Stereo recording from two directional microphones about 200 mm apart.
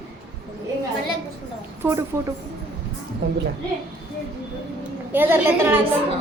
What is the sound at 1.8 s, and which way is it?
Speech, 15° right (ahead or behind).